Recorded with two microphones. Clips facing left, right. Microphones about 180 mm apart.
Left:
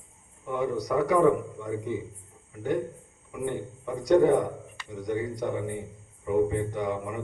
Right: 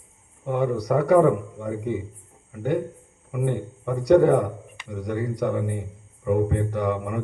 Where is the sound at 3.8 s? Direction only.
65° right (ahead or behind).